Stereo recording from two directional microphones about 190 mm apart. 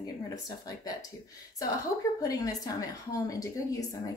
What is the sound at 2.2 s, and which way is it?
A woman's voice, 20° left (ahead or behind).